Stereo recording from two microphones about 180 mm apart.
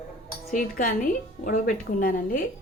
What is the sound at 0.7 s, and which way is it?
A woman's voice, 50° left (ahead or behind).